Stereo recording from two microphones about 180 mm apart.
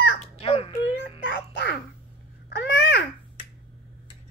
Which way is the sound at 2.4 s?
65° left (ahead or behind).